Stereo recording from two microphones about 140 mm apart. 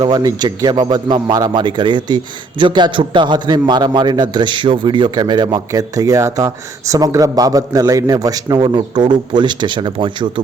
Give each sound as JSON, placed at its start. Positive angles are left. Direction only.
{"t": 0.0, "sound": "speech", "side_deg": -30}